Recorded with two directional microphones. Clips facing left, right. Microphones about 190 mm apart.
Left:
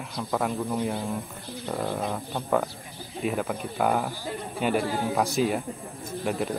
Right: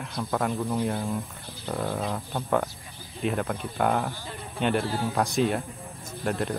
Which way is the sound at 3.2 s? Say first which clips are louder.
Even; 5° left (ahead or behind).